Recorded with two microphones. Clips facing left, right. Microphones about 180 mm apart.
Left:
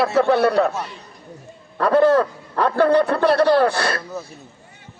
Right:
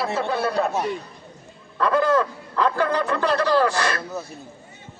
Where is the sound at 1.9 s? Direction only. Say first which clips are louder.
Left 6 dB; 60° left (ahead or behind).